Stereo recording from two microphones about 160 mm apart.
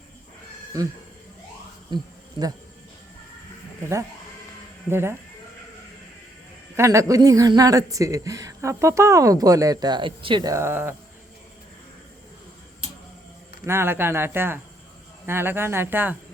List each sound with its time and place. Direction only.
0.7 s a woman's voice: 20° right (ahead or behind)
1.9 s a woman's voice: 30° right (ahead or behind)
4.9 s speech: 15° right (ahead or behind)
6.7 s a man's voice: 20° right (ahead or behind)
13.7 s speech: 15° right (ahead or behind)